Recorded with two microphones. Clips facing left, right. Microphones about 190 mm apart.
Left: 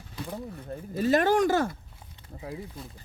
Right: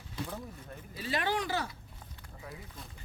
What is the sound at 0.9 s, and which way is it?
Speech, 45° left (ahead or behind).